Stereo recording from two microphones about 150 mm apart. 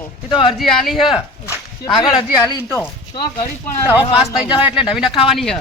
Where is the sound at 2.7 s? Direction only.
25° left (ahead or behind).